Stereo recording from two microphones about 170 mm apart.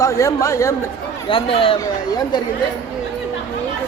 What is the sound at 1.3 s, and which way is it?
Speech, 30° left (ahead or behind).